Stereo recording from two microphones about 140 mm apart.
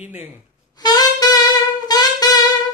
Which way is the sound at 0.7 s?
30° left (ahead or behind).